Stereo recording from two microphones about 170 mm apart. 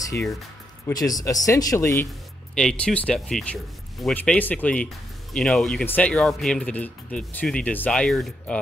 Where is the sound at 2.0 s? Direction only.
5° left (ahead or behind).